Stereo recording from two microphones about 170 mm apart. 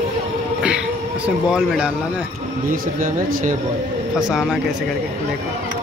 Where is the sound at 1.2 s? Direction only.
5° right (ahead or behind).